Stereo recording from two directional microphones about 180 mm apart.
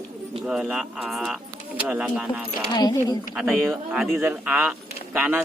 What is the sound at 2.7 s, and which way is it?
Speech, 20° left (ahead or behind).